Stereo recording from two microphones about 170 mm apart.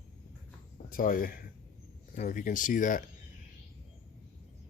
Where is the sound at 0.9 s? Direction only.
55° left (ahead or behind).